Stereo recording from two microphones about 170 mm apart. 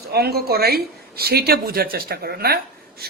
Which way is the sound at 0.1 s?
70° right (ahead or behind).